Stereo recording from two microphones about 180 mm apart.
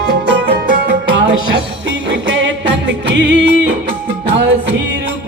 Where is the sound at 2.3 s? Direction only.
85° right.